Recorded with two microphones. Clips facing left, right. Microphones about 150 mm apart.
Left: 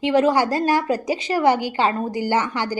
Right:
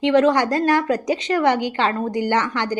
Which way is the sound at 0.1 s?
5° left (ahead or behind).